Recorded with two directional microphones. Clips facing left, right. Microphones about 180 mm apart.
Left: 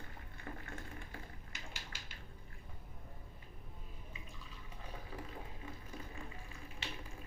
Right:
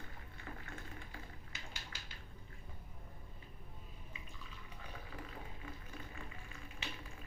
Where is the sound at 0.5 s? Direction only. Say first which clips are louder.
Left 3 dB; 40° left (ahead or behind).